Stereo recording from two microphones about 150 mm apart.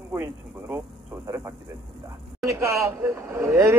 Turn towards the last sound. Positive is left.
turn(degrees=-20)  # may be behind; listen again after turning